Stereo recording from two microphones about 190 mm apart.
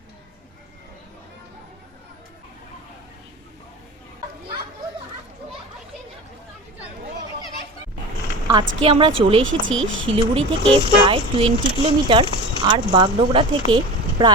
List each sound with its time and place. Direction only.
8.8 s speech: 30° right (ahead or behind)
9.4 s speech: 90° right
10.2 s speech: 30° right (ahead or behind)